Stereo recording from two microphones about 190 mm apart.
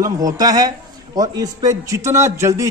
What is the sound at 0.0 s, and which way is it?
A man's voice, 20° right (ahead or behind).